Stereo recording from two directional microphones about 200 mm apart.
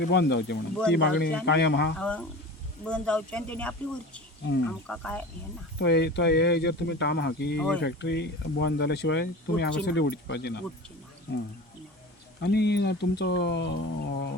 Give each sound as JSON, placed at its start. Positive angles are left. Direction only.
{"t": 0.0, "sound": "speech", "side_deg": 55}
{"t": 2.0, "sound": "speech", "side_deg": 5}
{"t": 5.8, "sound": "speech", "side_deg": 55}
{"t": 12.4, "sound": "speech", "side_deg": 55}